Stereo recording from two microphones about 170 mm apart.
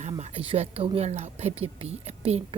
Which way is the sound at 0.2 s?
35° right (ahead or behind).